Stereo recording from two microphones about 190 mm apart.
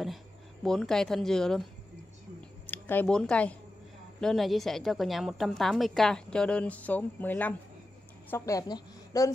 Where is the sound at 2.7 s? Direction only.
10° left (ahead or behind).